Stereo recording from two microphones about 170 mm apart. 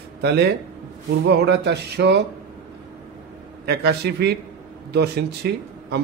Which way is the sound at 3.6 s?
75° right (ahead or behind).